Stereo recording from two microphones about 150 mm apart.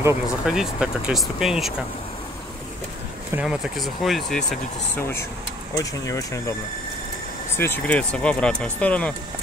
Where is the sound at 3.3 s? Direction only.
5° right (ahead or behind).